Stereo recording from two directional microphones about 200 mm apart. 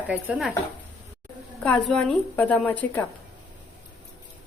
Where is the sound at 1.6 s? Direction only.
5° left (ahead or behind).